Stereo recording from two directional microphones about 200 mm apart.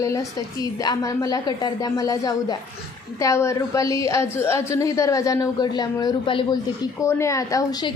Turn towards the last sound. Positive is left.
turn(degrees=20)  # may be behind; listen again after turning